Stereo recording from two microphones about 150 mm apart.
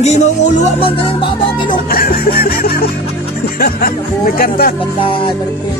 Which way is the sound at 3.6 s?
75° left (ahead or behind).